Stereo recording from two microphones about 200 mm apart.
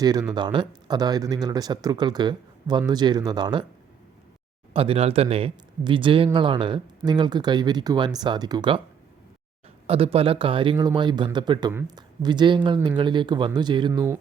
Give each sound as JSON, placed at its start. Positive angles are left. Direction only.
{"t": 0.0, "sound": "speech", "side_deg": -20}
{"t": 4.7, "sound": "speech", "side_deg": -30}
{"t": 9.8, "sound": "speech", "side_deg": -30}